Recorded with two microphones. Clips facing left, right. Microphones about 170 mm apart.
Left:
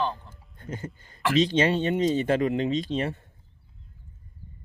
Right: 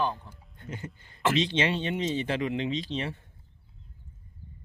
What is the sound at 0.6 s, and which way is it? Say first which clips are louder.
Speech: left 4 dB; 40° left (ahead or behind).